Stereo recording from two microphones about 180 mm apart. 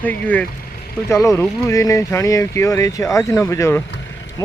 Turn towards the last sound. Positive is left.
turn(degrees=20)  # may be behind; listen again after turning